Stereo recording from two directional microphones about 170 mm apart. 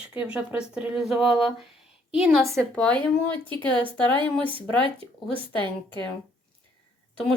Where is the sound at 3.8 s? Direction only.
30° right (ahead or behind).